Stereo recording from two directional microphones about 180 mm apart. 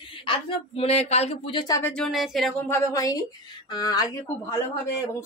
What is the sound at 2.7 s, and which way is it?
Speech, 20° left (ahead or behind).